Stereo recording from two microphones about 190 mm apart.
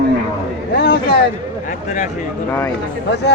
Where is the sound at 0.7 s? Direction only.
50° left (ahead or behind).